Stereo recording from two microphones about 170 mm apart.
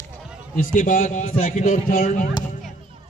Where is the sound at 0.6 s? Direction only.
50° left (ahead or behind).